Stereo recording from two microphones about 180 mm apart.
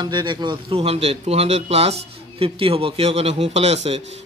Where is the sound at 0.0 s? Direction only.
25° right (ahead or behind).